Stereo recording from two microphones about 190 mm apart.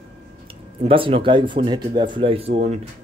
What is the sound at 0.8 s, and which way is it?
Speech, 30° right (ahead or behind).